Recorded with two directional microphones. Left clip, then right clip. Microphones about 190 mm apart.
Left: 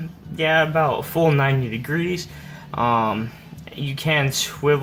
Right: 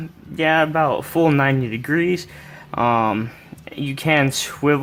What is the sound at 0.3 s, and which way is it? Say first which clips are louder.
Speech: right 1 dB; 45° right (ahead or behind).